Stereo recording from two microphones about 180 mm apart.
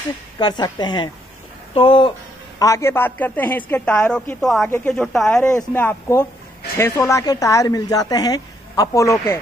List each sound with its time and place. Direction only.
0.4 s speech: 25° left (ahead or behind)
2.6 s a woman's voice: 15° left (ahead or behind)